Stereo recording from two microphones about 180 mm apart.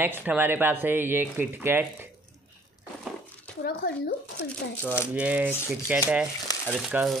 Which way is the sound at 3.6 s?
60° left (ahead or behind).